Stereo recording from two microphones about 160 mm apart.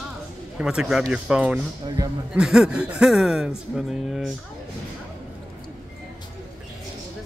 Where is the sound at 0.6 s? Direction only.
5° right (ahead or behind).